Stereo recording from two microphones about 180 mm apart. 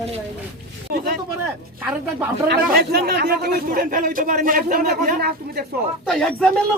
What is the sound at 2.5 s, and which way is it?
A man's voice, 60° right (ahead or behind).